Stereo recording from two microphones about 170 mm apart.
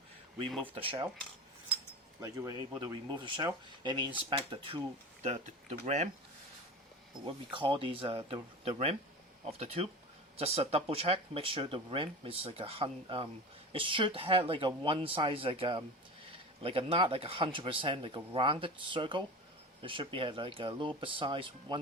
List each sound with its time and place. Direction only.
0.7 s speech: 30° right (ahead or behind)
2.2 s speech: 25° right (ahead or behind)
5.8 s speech: 45° right (ahead or behind)
7.3 s speech: 30° right (ahead or behind)